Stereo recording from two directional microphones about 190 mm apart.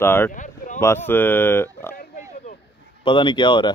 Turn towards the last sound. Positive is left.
turn(degrees=25)  # may be behind; listen again after turning